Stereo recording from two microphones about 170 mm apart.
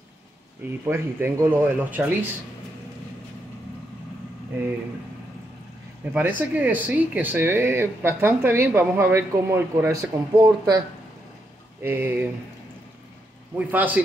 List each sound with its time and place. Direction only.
0.8 s speech: 15° right (ahead or behind)
6.1 s speech: 10° right (ahead or behind)
11.8 s speech: 15° right (ahead or behind)
13.6 s speech: 10° right (ahead or behind)